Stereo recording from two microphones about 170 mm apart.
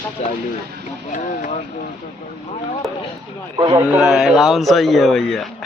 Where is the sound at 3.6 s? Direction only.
25° right (ahead or behind).